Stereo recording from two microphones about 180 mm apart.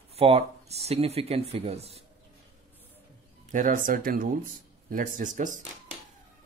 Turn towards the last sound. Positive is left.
turn(degrees=-45)  # may be behind; listen again after turning